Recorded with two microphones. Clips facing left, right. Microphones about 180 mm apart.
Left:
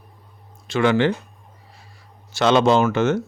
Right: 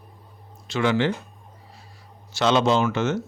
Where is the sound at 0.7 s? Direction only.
60° left (ahead or behind).